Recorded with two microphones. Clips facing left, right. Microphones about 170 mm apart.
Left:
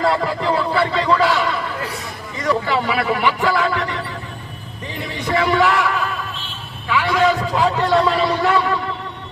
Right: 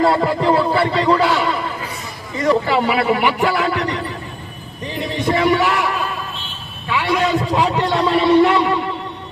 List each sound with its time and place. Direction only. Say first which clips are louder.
0.0 s a sound: right 3 dB; 25° right (ahead or behind)
2.5 s a man's voice: right 3 dB; 30° right (ahead or behind)
5.2 s a man's voice: right 1 dB; 25° right (ahead or behind)
6.9 s a man's voice: left 1 dB; 25° right (ahead or behind)